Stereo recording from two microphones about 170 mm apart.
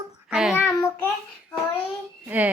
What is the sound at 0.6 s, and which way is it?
Child singing, 20° left (ahead or behind).